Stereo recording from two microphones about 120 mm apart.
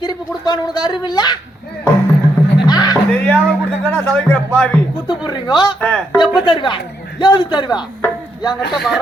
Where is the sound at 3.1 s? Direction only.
10° left (ahead or behind).